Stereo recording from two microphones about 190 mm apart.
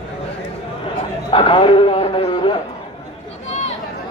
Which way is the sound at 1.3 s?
25° left (ahead or behind).